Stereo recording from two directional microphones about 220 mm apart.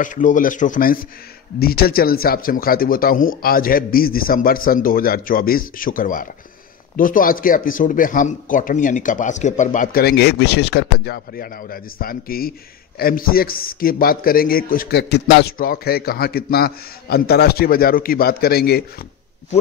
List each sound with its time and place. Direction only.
0.0 s speech: 35° left (ahead or behind); by 15.5 s 50° left (ahead or behind)
15.5 s a man's voice: 40° left (ahead or behind)